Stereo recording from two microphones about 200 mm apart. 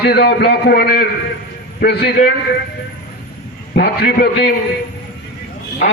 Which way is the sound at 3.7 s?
55° left (ahead or behind).